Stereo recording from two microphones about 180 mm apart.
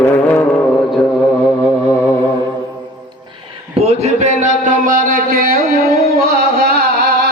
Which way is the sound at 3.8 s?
35° right (ahead or behind).